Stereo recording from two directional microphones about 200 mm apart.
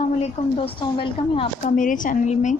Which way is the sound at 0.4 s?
30° left (ahead or behind).